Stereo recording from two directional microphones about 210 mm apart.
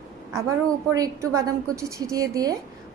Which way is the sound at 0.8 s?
15° right (ahead or behind).